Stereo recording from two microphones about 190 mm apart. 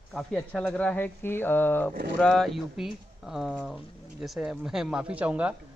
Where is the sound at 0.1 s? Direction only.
5° left (ahead or behind).